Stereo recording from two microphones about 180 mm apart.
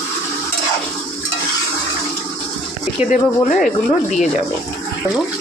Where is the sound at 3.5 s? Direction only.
Centre (ahead or behind).